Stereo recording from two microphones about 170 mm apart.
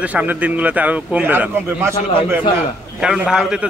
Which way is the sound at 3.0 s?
5° right (ahead or behind).